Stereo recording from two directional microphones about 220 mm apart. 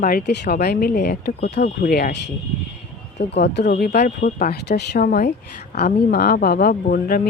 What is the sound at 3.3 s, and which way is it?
Speech, 50° left (ahead or behind).